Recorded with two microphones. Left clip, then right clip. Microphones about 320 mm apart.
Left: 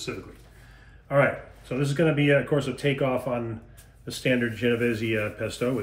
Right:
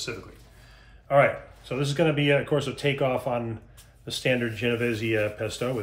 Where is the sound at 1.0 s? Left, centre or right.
Right.